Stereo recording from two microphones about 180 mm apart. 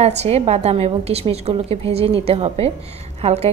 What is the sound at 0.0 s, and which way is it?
A woman's voice, 35° right (ahead or behind).